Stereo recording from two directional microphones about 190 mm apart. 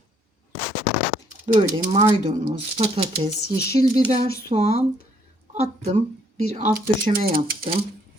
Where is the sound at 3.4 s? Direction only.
60° left (ahead or behind).